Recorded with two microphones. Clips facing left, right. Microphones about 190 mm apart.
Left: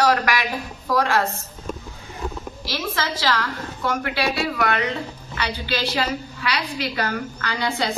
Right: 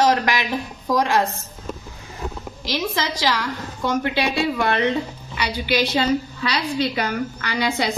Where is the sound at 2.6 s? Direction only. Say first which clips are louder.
Right 3 dB; 20° right (ahead or behind).